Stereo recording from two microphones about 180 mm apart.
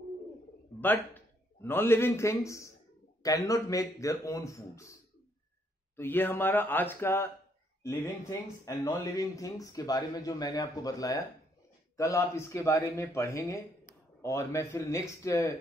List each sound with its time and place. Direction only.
0.7 s speech: 10° left (ahead or behind)
5.9 s speech: 10° left (ahead or behind)